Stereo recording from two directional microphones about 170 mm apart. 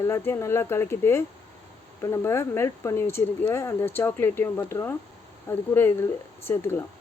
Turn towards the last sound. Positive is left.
turn(degrees=15)  # may be behind; listen again after turning